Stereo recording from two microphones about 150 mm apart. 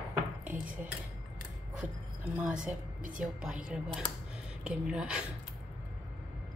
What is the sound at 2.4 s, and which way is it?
A woman's voice, 5° right (ahead or behind).